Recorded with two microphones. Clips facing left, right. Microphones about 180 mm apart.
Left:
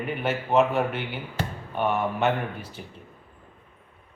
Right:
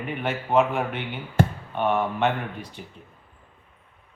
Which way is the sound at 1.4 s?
55° right (ahead or behind).